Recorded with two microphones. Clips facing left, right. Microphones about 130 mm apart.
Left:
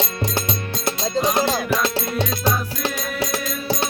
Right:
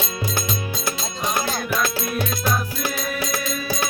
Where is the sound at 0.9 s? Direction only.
30° left (ahead or behind).